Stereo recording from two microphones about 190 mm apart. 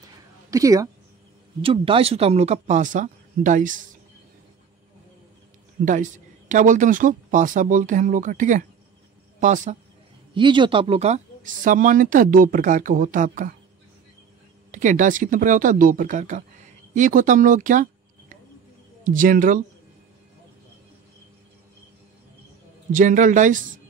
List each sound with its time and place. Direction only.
0.5 s a woman's voice: 15° right (ahead or behind)
1.6 s speech: 30° right (ahead or behind)
5.9 s speech: 40° right (ahead or behind)
10.3 s speech: 25° right (ahead or behind); by 13.6 s 45° right (ahead or behind)
14.7 s speech: 40° right (ahead or behind)
19.0 s speech: 45° right (ahead or behind)
22.9 s speech: 40° right (ahead or behind)